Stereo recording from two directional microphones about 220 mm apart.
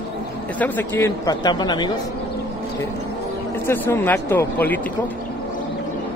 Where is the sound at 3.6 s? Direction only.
10° left (ahead or behind).